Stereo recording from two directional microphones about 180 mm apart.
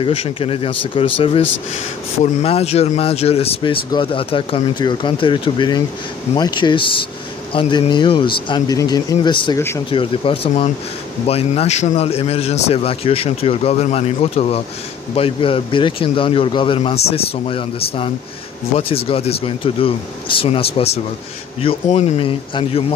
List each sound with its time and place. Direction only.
0.0 s a man's voice: 30° left (ahead or behind)